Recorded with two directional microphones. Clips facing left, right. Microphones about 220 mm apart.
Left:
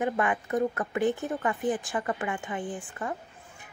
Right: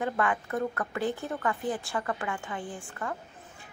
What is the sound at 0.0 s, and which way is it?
A woman's voice, 20° left (ahead or behind).